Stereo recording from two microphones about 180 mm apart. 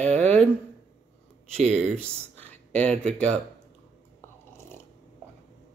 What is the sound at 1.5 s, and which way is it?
Speech, 35° right (ahead or behind).